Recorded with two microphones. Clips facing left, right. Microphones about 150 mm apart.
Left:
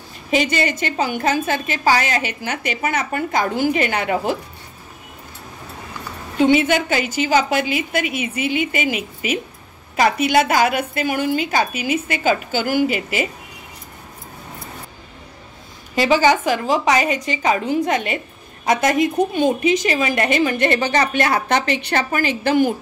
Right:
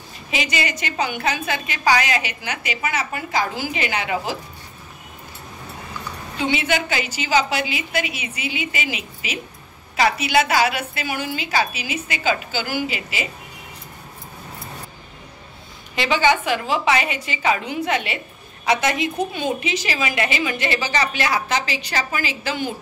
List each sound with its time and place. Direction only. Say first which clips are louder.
0.3 s a woman's voice: left 6 dB; 50° left (ahead or behind)
6.3 s a woman's voice: left 7 dB; 45° left (ahead or behind)
15.9 s a woman's voice: left 4 dB; 40° left (ahead or behind)